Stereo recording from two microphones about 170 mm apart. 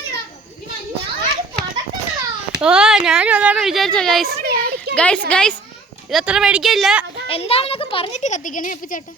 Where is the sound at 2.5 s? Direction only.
5° right (ahead or behind).